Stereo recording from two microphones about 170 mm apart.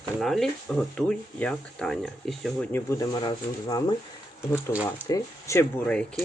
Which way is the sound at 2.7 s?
20° left (ahead or behind).